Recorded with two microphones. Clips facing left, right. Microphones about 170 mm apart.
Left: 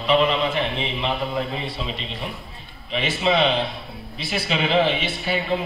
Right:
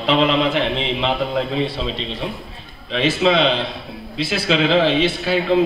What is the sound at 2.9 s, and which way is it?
A man's voice, 90° right.